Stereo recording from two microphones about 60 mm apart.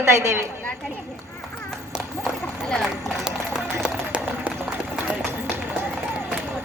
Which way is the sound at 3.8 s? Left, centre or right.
Centre.